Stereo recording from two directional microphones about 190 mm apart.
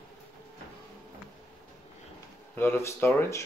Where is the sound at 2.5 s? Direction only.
10° left (ahead or behind).